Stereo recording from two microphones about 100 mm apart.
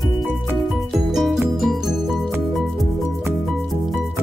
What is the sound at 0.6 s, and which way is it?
Music, centre (ahead or behind).